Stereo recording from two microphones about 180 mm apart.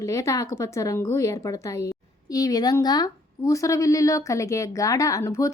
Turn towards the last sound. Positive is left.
turn(degrees=20)  # may be behind; listen again after turning